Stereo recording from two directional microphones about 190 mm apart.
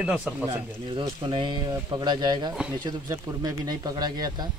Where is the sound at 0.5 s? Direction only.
25° right (ahead or behind).